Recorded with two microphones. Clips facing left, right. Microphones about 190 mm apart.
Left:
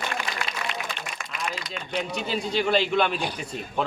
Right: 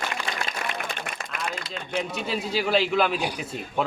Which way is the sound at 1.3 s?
55° right (ahead or behind).